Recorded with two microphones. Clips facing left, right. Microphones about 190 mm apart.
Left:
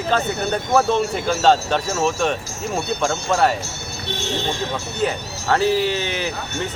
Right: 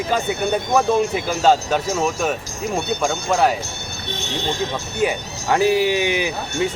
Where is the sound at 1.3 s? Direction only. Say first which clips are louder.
Left 1 dB; 10° right (ahead or behind).